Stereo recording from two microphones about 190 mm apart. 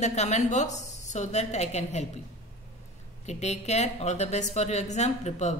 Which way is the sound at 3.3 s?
35° left (ahead or behind).